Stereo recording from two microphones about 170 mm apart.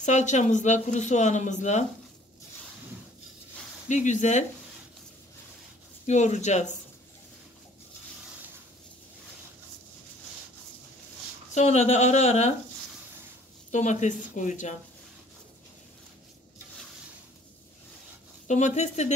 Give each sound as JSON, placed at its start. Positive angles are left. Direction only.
{"t": 0.0, "sound": "speech", "side_deg": 45}
{"t": 3.9, "sound": "speech", "side_deg": 45}
{"t": 6.0, "sound": "speech", "side_deg": 45}
{"t": 11.5, "sound": "speech", "side_deg": 40}
{"t": 13.7, "sound": "speech", "side_deg": 45}
{"t": 18.5, "sound": "speech", "side_deg": 45}